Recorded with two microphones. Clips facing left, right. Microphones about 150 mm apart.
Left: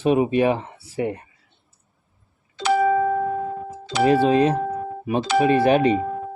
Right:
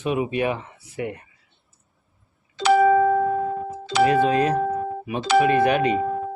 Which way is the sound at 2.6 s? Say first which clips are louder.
Right 3 dB; 80° right.